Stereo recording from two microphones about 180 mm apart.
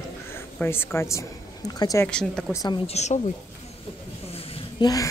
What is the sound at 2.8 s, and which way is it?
Speech, 40° left (ahead or behind).